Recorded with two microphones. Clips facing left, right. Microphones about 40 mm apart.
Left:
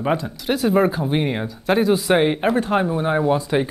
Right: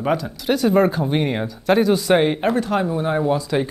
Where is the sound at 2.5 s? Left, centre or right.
Left.